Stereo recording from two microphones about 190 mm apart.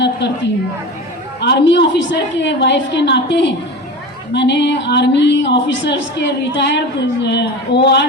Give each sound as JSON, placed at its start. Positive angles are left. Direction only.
{"t": 1.4, "sound": "a woman's voice", "side_deg": 65}